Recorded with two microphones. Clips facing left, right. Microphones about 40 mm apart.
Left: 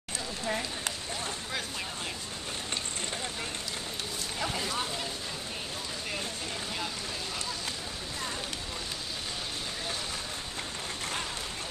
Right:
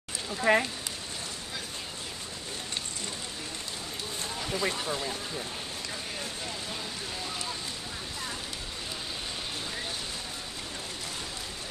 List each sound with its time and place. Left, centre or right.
0.5 s speech: right